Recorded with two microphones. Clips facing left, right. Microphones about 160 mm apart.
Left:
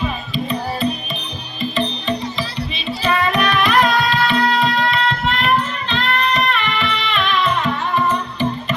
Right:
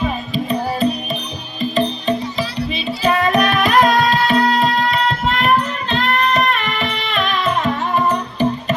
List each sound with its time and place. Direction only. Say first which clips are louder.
1.7 s music: right 4 dB; 40° right (ahead or behind)